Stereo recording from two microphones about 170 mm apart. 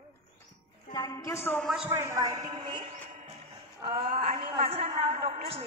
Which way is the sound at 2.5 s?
30° right (ahead or behind).